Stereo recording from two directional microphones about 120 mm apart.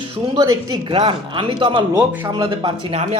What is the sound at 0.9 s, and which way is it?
Speech, 45° right (ahead or behind).